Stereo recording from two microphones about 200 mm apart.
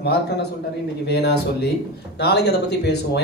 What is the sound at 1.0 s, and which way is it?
Speech, 55° left (ahead or behind).